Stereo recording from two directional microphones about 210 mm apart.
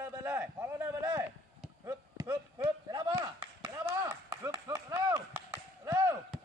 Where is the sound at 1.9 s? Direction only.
15° right (ahead or behind).